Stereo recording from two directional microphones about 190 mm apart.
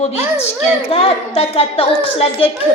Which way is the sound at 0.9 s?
30° left (ahead or behind).